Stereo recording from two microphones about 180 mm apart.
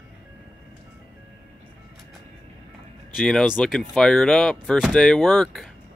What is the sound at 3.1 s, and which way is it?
Speech, centre (ahead or behind).